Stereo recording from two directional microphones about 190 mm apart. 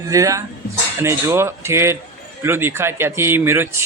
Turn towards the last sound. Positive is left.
turn(degrees=-10)  # may be behind; listen again after turning